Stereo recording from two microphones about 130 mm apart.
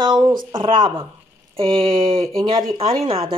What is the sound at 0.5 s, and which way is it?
Speech, 35° right (ahead or behind).